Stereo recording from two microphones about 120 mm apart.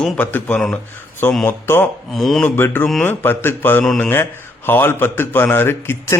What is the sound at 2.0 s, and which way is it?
Speech, centre (ahead or behind).